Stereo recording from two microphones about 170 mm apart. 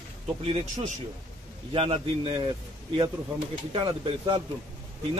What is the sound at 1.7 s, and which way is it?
Speech, 35° right (ahead or behind).